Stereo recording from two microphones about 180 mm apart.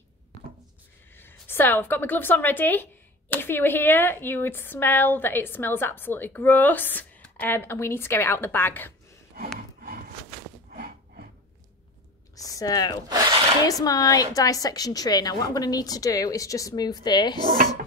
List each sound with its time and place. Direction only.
1.1 s a woman's voice: 10° left (ahead or behind)
9.3 s a sound: 55° right (ahead or behind)
12.4 s a woman's voice: 20° left (ahead or behind)
17.5 s speech: 50° right (ahead or behind)